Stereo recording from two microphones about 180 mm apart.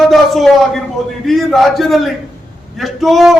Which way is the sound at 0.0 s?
Centre (ahead or behind).